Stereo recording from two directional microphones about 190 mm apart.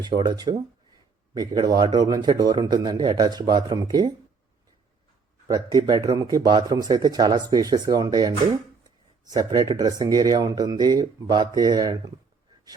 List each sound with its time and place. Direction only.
0.0 s a man's voice: 20° right (ahead or behind)
5.5 s a man's voice: 20° right (ahead or behind)
9.3 s a man's voice: 20° right (ahead or behind)